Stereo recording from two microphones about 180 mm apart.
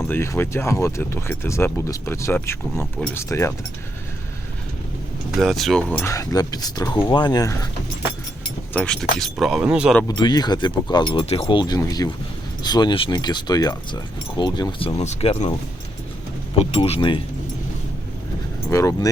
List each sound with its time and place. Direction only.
0.1 s speech: 15° left (ahead or behind)
5.4 s speech: centre (ahead or behind); by 7.7 s 20° left (ahead or behind)
8.7 s speech: 5° left (ahead or behind)
10.1 s speech: 25° left (ahead or behind)
16.6 s speech: 35° left (ahead or behind)
18.7 s speech: 15° left (ahead or behind)